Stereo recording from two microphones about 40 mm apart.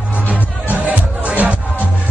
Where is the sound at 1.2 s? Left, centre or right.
Right.